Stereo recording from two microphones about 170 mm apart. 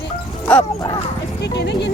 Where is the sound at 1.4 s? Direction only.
90° left.